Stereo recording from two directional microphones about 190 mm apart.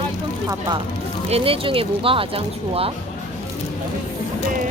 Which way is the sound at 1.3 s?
30° right (ahead or behind).